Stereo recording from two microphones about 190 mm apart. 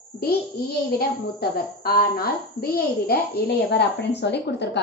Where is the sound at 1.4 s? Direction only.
55° left (ahead or behind).